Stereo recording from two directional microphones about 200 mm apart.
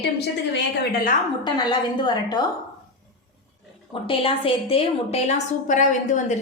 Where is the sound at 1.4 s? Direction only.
20° left (ahead or behind).